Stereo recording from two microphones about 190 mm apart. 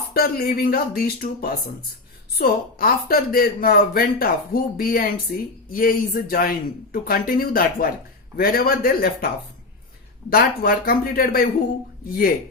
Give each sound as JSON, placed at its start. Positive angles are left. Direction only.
{"t": 0.1, "sound": "speech", "side_deg": 55}
{"t": 10.2, "sound": "speech", "side_deg": 55}